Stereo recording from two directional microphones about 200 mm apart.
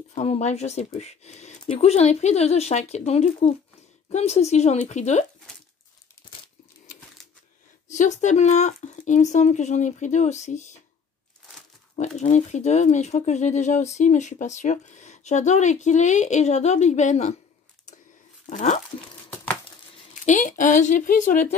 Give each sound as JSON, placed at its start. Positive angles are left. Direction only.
{"t": 0.1, "sound": "speech", "side_deg": 35}
{"t": 7.9, "sound": "speech", "side_deg": 40}
{"t": 12.2, "sound": "speech", "side_deg": 35}
{"t": 18.5, "sound": "speech", "side_deg": 35}
{"t": 20.2, "sound": "speech", "side_deg": 40}